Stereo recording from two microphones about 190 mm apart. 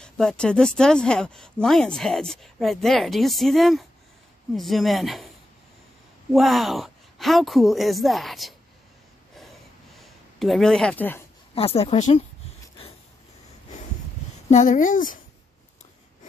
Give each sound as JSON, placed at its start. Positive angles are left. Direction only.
{"t": 0.0, "sound": "speech", "side_deg": 5}
{"t": 6.3, "sound": "speech", "side_deg": 0}
{"t": 9.9, "sound": "a sound", "side_deg": 0}
{"t": 11.5, "sound": "speech", "side_deg": 30}
{"t": 14.5, "sound": "speech", "side_deg": 40}